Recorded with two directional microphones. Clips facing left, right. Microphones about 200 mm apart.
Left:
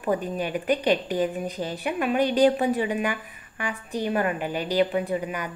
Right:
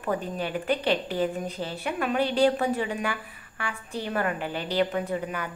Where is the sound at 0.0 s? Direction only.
15° left (ahead or behind).